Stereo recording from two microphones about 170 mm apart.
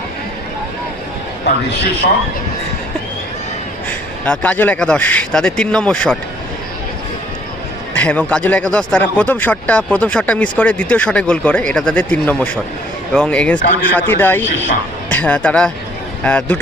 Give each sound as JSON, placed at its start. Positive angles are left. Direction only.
{"t": 1.5, "sound": "a man's voice", "side_deg": 80}
{"t": 3.8, "sound": "speech", "side_deg": 10}
{"t": 7.9, "sound": "a man's voice", "side_deg": 10}